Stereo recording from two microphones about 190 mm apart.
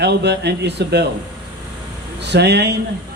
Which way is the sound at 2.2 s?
65° right (ahead or behind).